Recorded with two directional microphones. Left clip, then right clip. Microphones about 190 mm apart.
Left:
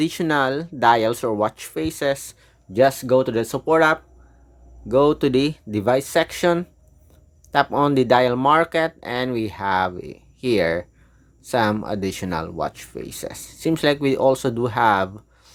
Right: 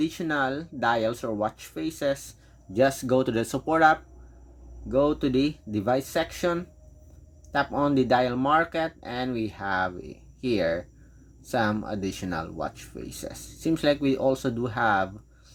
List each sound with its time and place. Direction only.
0.0 s speech: 40° left (ahead or behind)
4.9 s speech: 45° left (ahead or behind)